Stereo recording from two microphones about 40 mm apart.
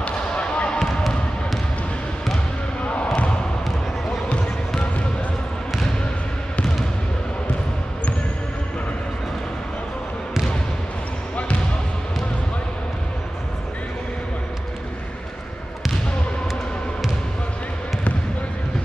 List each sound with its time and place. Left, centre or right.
0.0 s basketball bounce: left
2.8 s basketball bounce: left